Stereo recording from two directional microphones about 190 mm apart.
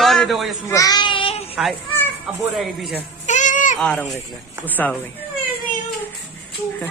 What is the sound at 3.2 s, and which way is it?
Goat, 40° left (ahead or behind).